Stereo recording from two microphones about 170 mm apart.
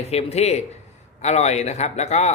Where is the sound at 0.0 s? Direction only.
35° left (ahead or behind).